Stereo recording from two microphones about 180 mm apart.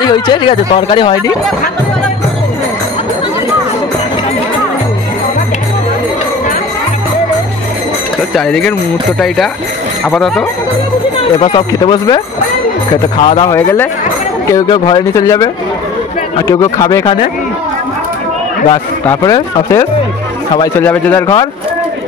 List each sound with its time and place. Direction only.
0.0 s speech: 25° left (ahead or behind)
8.4 s speech: 5° left (ahead or behind)
10.0 s speech: centre (ahead or behind)
11.3 s speech: 30° left (ahead or behind)
13.6 s speech: 10° left (ahead or behind)
14.5 s speech: 25° left (ahead or behind)
19.0 s speech: 20° left (ahead or behind)